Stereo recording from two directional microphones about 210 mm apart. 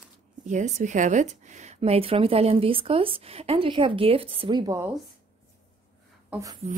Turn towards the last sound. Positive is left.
turn(degrees=-15)  # may be behind; listen again after turning